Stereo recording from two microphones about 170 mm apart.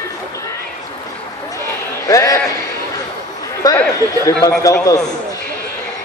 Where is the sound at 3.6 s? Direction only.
25° left (ahead or behind).